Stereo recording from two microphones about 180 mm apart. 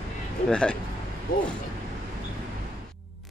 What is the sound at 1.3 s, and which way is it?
Speech, 55° left (ahead or behind).